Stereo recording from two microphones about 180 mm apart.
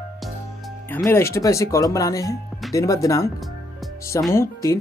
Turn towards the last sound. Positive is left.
turn(degrees=15)  # may be behind; listen again after turning